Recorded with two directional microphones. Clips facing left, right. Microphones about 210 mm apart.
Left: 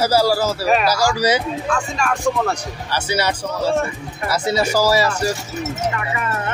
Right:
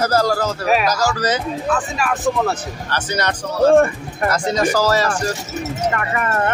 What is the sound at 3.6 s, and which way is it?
Speech, 55° right (ahead or behind).